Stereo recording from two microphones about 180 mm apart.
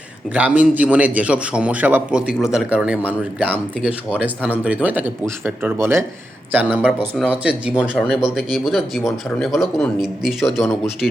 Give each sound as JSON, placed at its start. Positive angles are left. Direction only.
{"t": 0.3, "sound": "a man's voice", "side_deg": -10}